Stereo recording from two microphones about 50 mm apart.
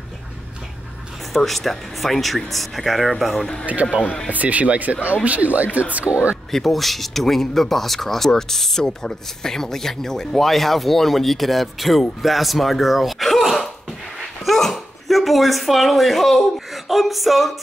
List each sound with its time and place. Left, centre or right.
1.3 s speech: centre
3.8 s speech: centre
4.3 s speech: right
6.5 s speech: centre